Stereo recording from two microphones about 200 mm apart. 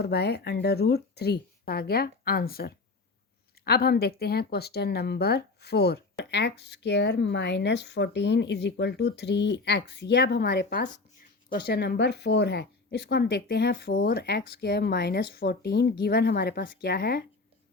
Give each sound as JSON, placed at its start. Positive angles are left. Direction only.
{"t": 0.0, "sound": "speech", "side_deg": 55}